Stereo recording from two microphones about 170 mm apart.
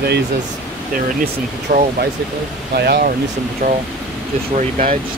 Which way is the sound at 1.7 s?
55° right (ahead or behind).